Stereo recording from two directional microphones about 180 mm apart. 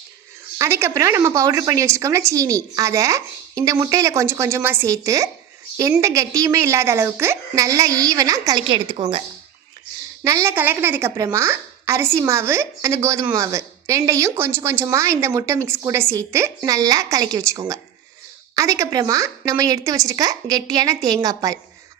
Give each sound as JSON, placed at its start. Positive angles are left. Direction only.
{"t": 0.6, "sound": "speech", "side_deg": -15}
{"t": 10.2, "sound": "a woman's voice", "side_deg": -15}